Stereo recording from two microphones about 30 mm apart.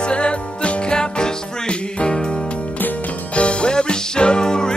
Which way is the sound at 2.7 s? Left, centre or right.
Left.